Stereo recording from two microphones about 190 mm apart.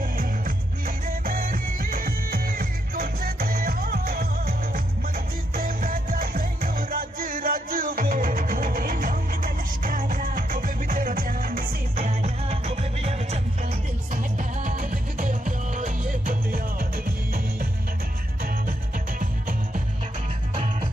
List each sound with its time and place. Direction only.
0.0 s music: 45° right (ahead or behind)
12.4 s music: 35° right (ahead or behind); by 17.7 s 50° right (ahead or behind)
19.2 s music: 45° right (ahead or behind)